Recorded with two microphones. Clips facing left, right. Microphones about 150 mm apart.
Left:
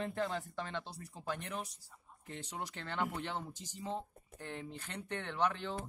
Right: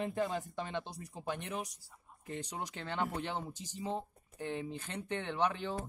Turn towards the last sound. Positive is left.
turn(degrees=-15)  # may be behind; listen again after turning